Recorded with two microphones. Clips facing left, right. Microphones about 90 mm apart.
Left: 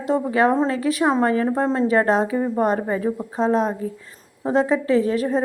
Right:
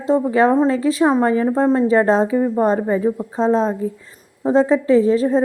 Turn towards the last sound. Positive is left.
turn(degrees=-25)  # may be behind; listen again after turning